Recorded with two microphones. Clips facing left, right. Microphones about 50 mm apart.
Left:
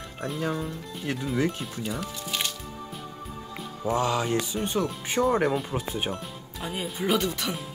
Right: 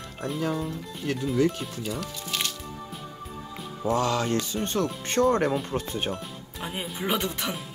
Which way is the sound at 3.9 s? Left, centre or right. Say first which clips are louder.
Even; centre.